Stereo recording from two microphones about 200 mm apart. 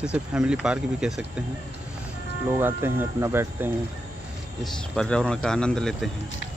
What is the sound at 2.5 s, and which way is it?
Speech, 10° right (ahead or behind).